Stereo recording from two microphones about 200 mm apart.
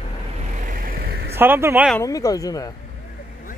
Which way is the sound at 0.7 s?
45° right (ahead or behind).